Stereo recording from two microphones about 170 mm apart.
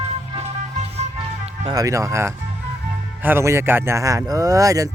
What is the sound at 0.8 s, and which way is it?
Music, 40° right (ahead or behind).